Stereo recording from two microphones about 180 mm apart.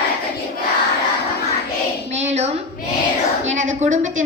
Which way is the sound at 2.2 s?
35° right (ahead or behind).